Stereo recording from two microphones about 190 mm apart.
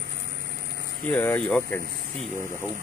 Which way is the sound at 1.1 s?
10° left (ahead or behind).